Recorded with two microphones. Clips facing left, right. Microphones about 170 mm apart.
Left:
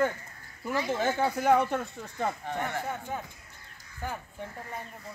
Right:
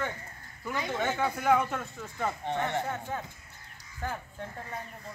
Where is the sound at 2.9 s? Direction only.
10° left (ahead or behind).